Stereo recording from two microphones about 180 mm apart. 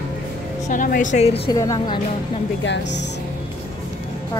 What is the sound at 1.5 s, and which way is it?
Speech, 20° left (ahead or behind).